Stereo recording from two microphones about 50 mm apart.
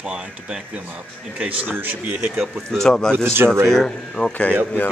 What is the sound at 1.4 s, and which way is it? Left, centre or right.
Speech, right.